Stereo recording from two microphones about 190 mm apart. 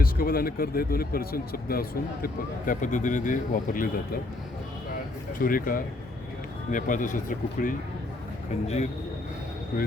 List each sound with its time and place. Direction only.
0.0 s a man's voice: 50° left (ahead or behind)
5.4 s a man's voice: 50° left (ahead or behind)